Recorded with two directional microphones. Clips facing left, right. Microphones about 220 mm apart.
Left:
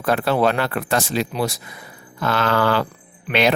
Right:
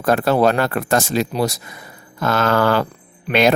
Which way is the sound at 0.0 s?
45° right (ahead or behind).